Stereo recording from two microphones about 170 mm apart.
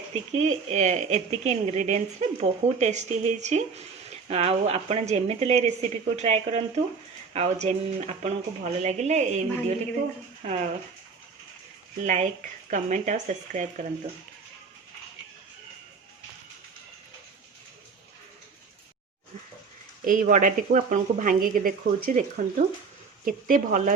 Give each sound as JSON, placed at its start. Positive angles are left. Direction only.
{"t": 0.3, "sound": "a woman's voice", "side_deg": -45}
{"t": 12.0, "sound": "a woman's voice", "side_deg": -40}
{"t": 20.1, "sound": "a woman's voice", "side_deg": -50}